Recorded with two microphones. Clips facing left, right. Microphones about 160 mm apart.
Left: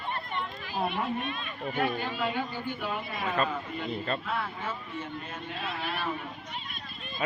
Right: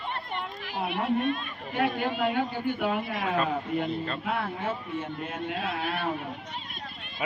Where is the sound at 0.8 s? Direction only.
60° right (ahead or behind).